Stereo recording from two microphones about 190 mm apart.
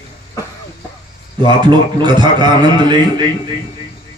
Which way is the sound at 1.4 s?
25° right (ahead or behind).